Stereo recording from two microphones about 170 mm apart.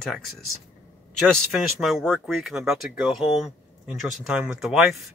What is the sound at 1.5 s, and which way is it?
Speech, centre (ahead or behind).